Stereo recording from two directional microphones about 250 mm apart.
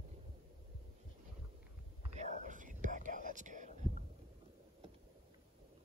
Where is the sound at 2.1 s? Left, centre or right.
Right.